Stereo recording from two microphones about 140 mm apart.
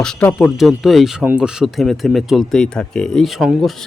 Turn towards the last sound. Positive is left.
turn(degrees=0)  # may be behind; listen again after turning